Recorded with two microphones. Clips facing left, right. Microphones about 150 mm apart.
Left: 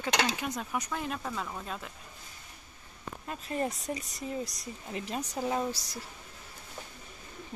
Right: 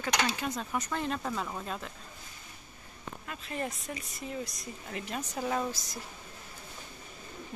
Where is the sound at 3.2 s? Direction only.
30° left (ahead or behind).